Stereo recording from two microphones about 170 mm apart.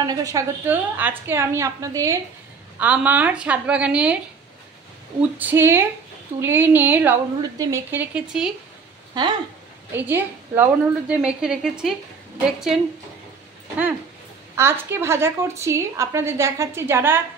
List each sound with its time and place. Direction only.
0.0 s a woman's voice: 20° right (ahead or behind)
2.8 s a woman's voice: 10° right (ahead or behind)
5.4 s a woman's voice: 10° right (ahead or behind)
9.9 s a woman's voice: 10° right (ahead or behind)
14.5 s a woman's voice: 15° right (ahead or behind)